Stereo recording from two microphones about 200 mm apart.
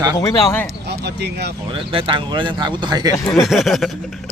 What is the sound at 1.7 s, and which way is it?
Speech, 25° right (ahead or behind).